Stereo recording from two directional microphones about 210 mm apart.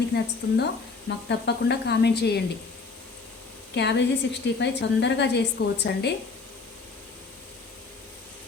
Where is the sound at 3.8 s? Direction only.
55° left (ahead or behind).